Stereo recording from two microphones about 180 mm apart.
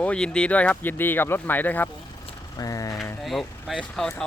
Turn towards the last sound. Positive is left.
turn(degrees=0)  # may be behind; listen again after turning